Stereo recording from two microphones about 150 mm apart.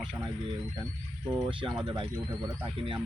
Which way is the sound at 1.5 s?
35° right (ahead or behind).